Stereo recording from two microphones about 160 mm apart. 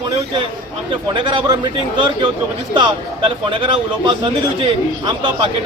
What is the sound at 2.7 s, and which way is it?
Speech, 30° right (ahead or behind).